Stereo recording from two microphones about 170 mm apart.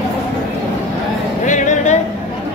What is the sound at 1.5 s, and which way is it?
Music, 45° left (ahead or behind).